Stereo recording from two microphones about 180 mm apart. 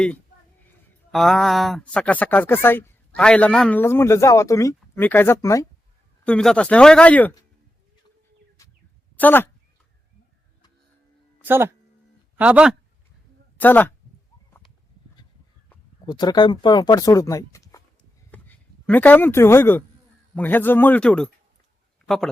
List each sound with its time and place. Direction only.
1.1 s speech: centre (ahead or behind); by 5.6 s 15° left (ahead or behind)
6.2 s speech: 5° left (ahead or behind)
8.6 s a sound: 15° left (ahead or behind)
9.1 s speech: 10° left (ahead or behind)
11.4 s speech: 10° right (ahead or behind)
13.6 s speech: 10° left (ahead or behind)
16.0 s speech: 25° left (ahead or behind)
18.3 s a sound: 10° left (ahead or behind)
20.3 s speech: 10° left (ahead or behind)